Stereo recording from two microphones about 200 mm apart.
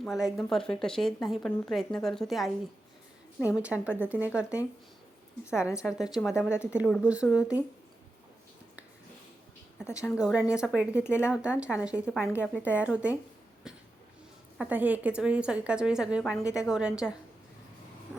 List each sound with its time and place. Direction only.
0.0 s speech: centre (ahead or behind)
3.5 s speech: 5° right (ahead or behind)
6.3 s speech: 10° left (ahead or behind)
6.7 s speech: centre (ahead or behind)
10.2 s speech: 5° right (ahead or behind)
14.6 s speech: 10° right (ahead or behind)
16.4 s speech: 15° left (ahead or behind)
16.6 s speech: 5° right (ahead or behind)